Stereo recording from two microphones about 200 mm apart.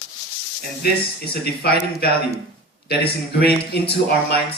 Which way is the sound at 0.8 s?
50° left (ahead or behind).